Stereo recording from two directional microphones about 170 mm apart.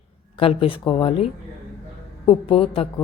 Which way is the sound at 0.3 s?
35° left (ahead or behind).